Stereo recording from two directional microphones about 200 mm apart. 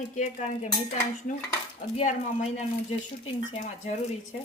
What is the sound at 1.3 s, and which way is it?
Speech, 40° left (ahead or behind).